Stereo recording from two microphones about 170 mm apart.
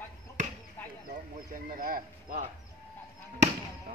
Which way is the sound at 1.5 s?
55° right (ahead or behind).